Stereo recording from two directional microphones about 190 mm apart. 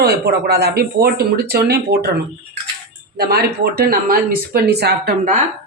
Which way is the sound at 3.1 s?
55° right (ahead or behind).